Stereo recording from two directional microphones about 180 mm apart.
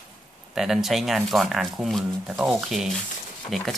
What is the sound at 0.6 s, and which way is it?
Speech, centre (ahead or behind).